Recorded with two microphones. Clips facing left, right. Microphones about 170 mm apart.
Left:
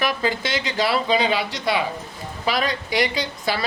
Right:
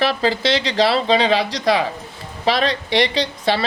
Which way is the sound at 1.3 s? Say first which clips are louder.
Right 5 dB; 90° right.